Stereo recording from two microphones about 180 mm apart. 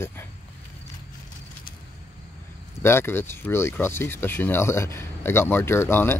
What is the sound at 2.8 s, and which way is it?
Speech, 15° left (ahead or behind).